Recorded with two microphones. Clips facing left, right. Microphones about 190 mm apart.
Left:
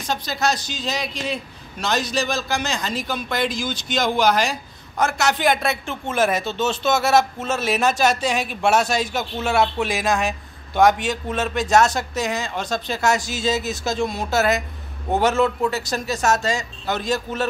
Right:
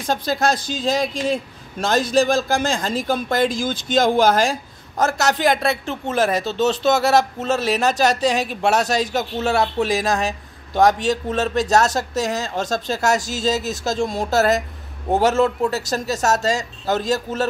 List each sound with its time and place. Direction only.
0.0 s a man's voice: 50° right (ahead or behind)